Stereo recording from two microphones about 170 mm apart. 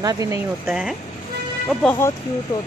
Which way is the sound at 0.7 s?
5° right (ahead or behind).